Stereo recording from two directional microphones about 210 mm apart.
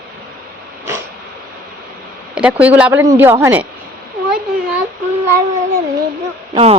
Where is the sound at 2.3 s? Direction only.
5° right (ahead or behind).